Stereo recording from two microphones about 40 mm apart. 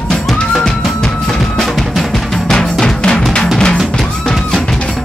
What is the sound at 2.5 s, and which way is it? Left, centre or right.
Music, centre.